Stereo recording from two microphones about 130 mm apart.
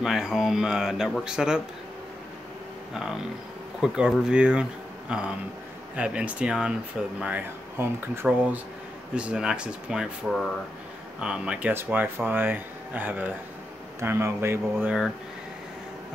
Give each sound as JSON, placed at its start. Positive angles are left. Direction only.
{"t": 0.0, "sound": "speech", "side_deg": -5}
{"t": 3.8, "sound": "speech", "side_deg": -5}